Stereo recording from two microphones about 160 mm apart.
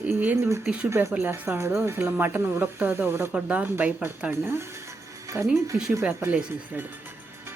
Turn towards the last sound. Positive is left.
turn(degrees=-15)  # may be behind; listen again after turning